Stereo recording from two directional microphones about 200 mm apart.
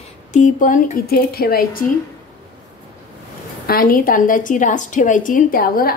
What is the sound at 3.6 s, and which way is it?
A woman's voice, 45° left (ahead or behind).